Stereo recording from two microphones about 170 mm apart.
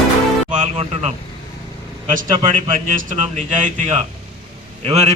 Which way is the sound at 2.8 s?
50° right (ahead or behind).